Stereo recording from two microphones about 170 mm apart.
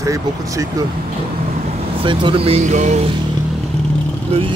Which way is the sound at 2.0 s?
30° right (ahead or behind).